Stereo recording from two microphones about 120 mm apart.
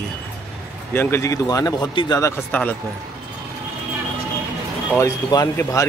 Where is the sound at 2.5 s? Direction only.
15° left (ahead or behind).